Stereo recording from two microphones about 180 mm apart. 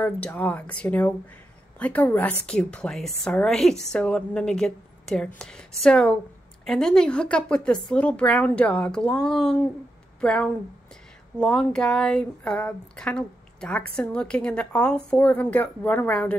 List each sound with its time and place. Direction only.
0.0 s speech: 10° left (ahead or behind)